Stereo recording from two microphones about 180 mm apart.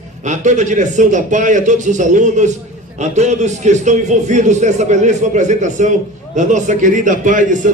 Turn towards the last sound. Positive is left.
turn(degrees=-45)  # may be behind; listen again after turning